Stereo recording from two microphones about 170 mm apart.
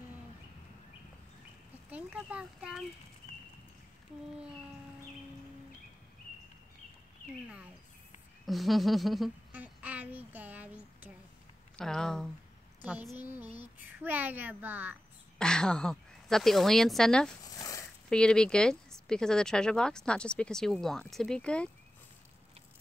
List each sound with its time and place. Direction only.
1.9 s a child's voice: 10° right (ahead or behind)
8.5 s speech: centre (ahead or behind)
9.5 s a sound: 10° right (ahead or behind)
11.7 s speech: 5° left (ahead or behind)
13.2 s a child's voice: 10° right (ahead or behind)
15.3 s speech: 5° left (ahead or behind)
17.6 s a sound: 20° left (ahead or behind)
18.1 s speech: 5° left (ahead or behind)